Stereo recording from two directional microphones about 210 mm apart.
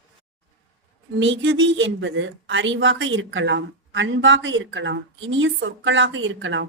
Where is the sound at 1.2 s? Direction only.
60° right (ahead or behind).